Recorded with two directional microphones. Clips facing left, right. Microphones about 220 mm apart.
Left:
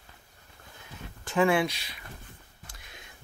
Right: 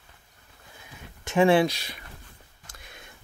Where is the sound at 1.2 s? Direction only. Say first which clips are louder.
Right 5 dB; 30° right (ahead or behind).